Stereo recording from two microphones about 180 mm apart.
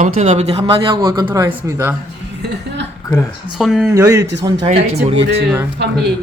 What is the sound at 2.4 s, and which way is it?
Speech, 70° right (ahead or behind).